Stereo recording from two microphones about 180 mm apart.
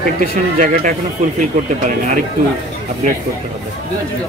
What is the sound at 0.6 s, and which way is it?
Speech, 50° right (ahead or behind).